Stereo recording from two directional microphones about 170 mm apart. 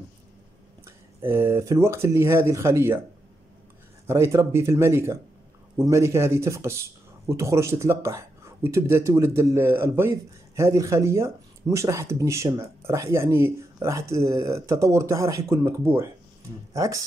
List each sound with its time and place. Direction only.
0.8 s speech: 15° right (ahead or behind)
4.1 s speech: 15° right (ahead or behind)